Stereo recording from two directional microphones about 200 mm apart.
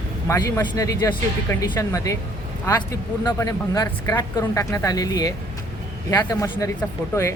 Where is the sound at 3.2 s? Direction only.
20° left (ahead or behind).